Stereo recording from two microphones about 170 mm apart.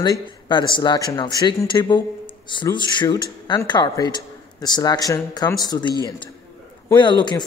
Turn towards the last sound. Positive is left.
turn(degrees=25)  # may be behind; listen again after turning